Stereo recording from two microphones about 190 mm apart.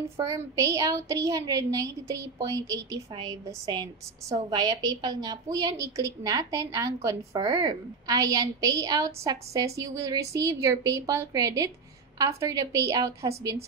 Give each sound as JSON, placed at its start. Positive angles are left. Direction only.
{"t": 0.3, "sound": "a woman's voice", "side_deg": -15}